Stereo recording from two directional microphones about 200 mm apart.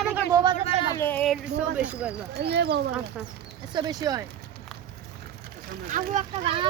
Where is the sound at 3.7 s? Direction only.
20° right (ahead or behind).